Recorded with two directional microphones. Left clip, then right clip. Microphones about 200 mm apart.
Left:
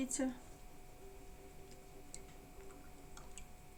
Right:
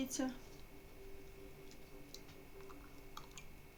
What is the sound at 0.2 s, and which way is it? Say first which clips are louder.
Speech: left 2 dB; 25° right (ahead or behind).